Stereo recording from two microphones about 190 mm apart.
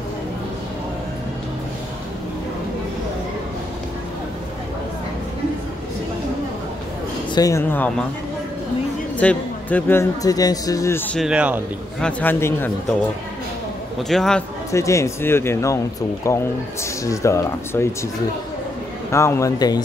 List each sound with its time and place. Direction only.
7.3 s a man's voice: 15° left (ahead or behind)
9.2 s a man's voice: 10° left (ahead or behind)
11.1 s speech: 5° right (ahead or behind)
12.0 s a man's voice: 10° left (ahead or behind)
14.0 s speech: centre (ahead or behind)
14.7 s a man's voice: 15° left (ahead or behind)
19.1 s a man's voice: 15° left (ahead or behind)